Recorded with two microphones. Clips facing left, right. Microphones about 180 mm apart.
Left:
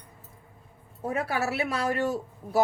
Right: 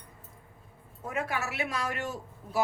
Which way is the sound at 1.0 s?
35° left (ahead or behind).